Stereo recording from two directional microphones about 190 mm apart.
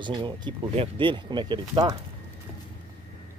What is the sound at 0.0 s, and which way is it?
Speech, 25° right (ahead or behind).